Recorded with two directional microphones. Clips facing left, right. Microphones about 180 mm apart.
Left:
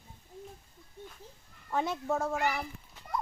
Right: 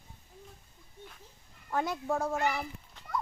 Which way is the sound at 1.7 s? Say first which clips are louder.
Even; centre (ahead or behind).